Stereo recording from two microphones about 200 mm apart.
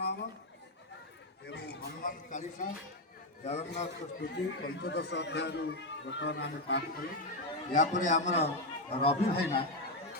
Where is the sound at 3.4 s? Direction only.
35° left (ahead or behind).